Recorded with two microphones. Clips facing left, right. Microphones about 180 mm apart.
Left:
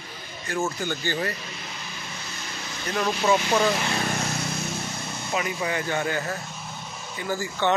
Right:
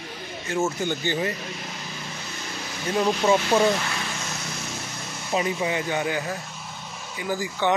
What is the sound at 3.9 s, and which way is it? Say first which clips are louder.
Vehicle: left 5 dB; 50° left (ahead or behind).